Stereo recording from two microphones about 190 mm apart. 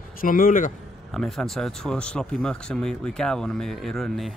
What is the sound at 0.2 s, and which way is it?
Speech, 45° left (ahead or behind).